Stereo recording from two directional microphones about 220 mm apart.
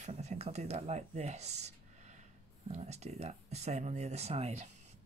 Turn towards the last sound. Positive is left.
turn(degrees=-30)  # may be behind; listen again after turning